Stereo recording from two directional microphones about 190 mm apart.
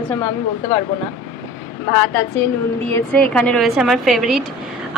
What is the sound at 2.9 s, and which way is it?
A woman's voice, 5° left (ahead or behind).